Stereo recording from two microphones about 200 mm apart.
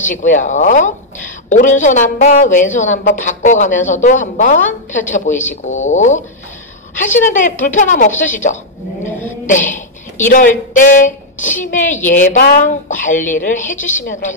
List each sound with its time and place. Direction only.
0.1 s a woman's voice: 40° left (ahead or behind)
7.2 s a woman's voice: 40° left (ahead or behind)
9.5 s a woman's voice: 40° left (ahead or behind)